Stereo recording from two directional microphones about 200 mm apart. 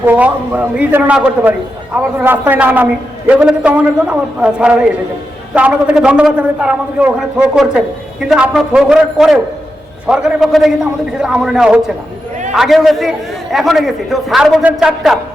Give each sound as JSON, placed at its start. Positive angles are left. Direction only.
{"t": 0.0, "sound": "a man's voice", "side_deg": -10}